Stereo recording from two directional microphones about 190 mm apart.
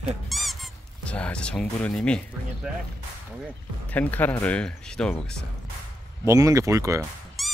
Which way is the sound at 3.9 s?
10° left (ahead or behind).